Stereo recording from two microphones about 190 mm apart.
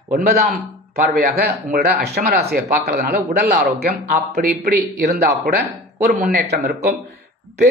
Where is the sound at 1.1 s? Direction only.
55° right (ahead or behind).